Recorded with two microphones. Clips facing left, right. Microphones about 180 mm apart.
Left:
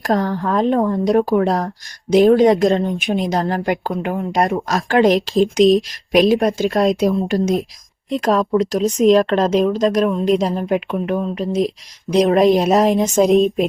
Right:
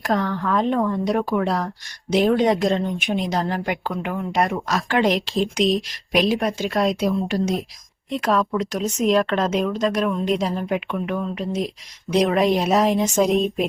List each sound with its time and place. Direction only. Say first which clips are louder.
0.0 s speech: left 4 dB; 40° left (ahead or behind)